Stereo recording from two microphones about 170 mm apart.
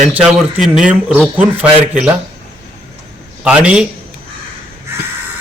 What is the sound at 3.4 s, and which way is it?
Speech, 5° right (ahead or behind).